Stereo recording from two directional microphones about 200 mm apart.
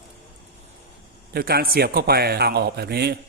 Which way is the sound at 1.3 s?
50° right (ahead or behind).